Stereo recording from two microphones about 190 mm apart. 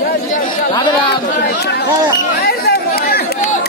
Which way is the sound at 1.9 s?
20° right (ahead or behind).